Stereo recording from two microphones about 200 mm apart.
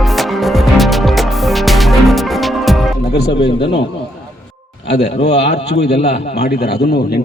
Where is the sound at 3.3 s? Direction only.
25° left (ahead or behind).